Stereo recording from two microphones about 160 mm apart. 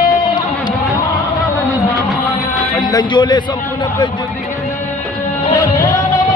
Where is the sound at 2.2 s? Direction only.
20° left (ahead or behind).